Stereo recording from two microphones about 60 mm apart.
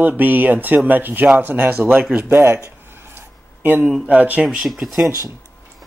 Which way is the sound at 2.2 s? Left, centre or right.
Right.